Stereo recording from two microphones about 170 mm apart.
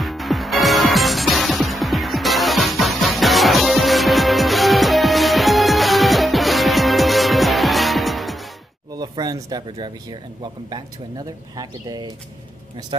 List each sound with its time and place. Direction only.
0.0 s music: centre (ahead or behind)
8.9 s speech: 25° right (ahead or behind)